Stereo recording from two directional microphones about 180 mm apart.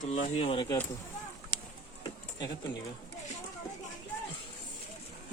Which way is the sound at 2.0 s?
20° left (ahead or behind).